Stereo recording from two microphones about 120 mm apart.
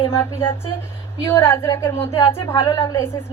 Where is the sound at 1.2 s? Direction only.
20° left (ahead or behind).